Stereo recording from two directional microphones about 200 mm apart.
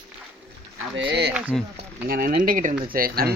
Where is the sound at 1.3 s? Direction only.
5° right (ahead or behind).